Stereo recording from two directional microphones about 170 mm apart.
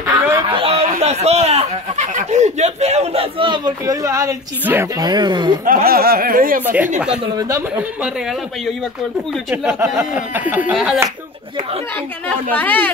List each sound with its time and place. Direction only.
0.5 s speech: 35° right (ahead or behind)
5.7 s speech: 60° right (ahead or behind)
6.6 s a sound: 10° right (ahead or behind)
7.3 s speech: 20° right (ahead or behind)
9.3 s speech: centre (ahead or behind)
9.7 s a sound: 15° right (ahead or behind)
10.7 s speech: centre (ahead or behind)
12.3 s speech: 10° left (ahead or behind)